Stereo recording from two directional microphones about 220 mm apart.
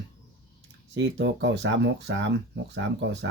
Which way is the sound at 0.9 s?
55° right (ahead or behind).